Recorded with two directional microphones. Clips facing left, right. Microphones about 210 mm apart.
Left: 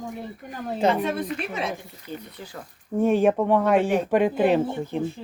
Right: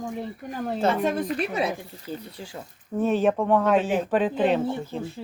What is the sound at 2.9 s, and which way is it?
Speech, 15° left (ahead or behind).